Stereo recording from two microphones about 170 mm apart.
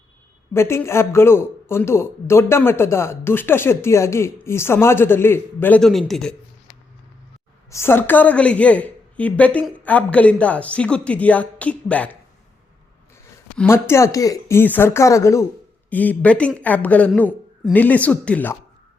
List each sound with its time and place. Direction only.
0.5 s speech: 15° left (ahead or behind)
7.7 s speech: 15° left (ahead or behind)
13.6 s speech: 15° left (ahead or behind)